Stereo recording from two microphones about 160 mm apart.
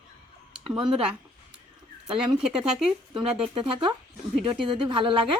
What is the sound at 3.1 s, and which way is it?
A woman's voice, 35° right (ahead or behind).